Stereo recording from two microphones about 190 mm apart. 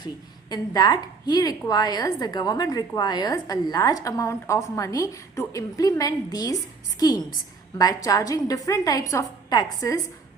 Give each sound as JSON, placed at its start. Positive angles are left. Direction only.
{"t": 0.5, "sound": "a woman's voice", "side_deg": 20}